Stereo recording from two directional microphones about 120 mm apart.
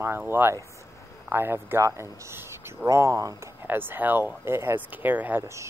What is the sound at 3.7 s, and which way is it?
Speech, 15° right (ahead or behind).